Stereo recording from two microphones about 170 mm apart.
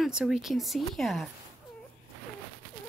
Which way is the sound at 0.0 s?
5° right (ahead or behind).